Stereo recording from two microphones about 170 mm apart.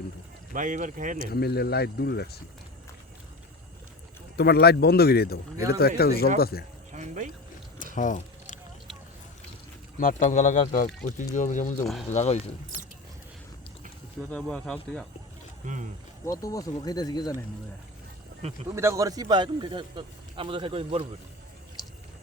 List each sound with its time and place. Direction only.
0.5 s speech: 50° right (ahead or behind)
1.2 s speech: 65° left (ahead or behind)
4.4 s speech: 75° left (ahead or behind)
6.9 s music: 45° right (ahead or behind)
7.9 s a sound: 50° left (ahead or behind)
10.0 s speech: 50° left (ahead or behind)
14.2 s speech: 5° left (ahead or behind)
15.6 s speech: 45° right (ahead or behind)
16.2 s speech: 20° left (ahead or behind)
18.7 s speech: 15° right (ahead or behind); by 21.2 s 35° right (ahead or behind)